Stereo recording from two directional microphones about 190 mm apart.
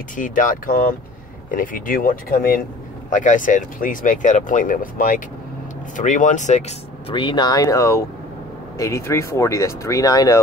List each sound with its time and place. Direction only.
0.1 s speech: 45° left (ahead or behind)
7.1 s speech: 25° left (ahead or behind)